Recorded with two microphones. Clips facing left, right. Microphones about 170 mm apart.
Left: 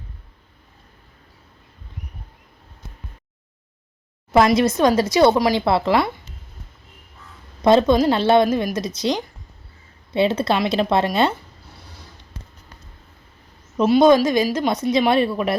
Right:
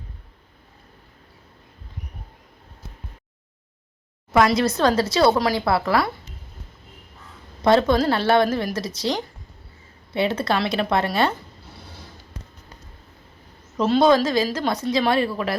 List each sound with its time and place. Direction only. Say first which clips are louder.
4.4 s a woman's voice: left 3 dB; 20° left (ahead or behind)
7.6 s a woman's voice: left 3 dB; 20° left (ahead or behind)
13.7 s a woman's voice: left 3 dB; 15° left (ahead or behind)